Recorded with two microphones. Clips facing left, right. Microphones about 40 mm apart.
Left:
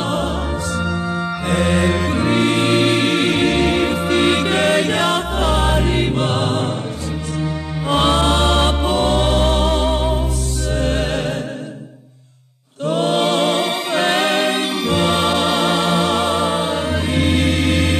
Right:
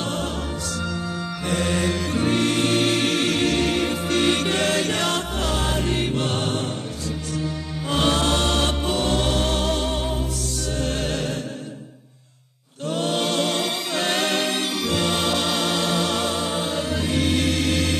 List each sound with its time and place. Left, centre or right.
0.0 s music: left
1.5 s music: left
7.9 s music: left
12.8 s music: left